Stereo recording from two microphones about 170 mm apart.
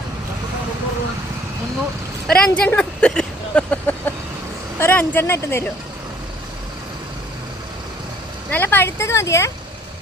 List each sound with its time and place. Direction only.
2.2 s a sound: 5° left (ahead or behind)
4.8 s speech: 10° left (ahead or behind)
8.4 s speech: 10° left (ahead or behind)